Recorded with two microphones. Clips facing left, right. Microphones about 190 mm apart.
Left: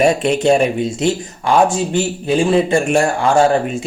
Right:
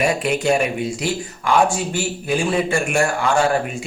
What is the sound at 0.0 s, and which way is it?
A man's voice, 30° left (ahead or behind).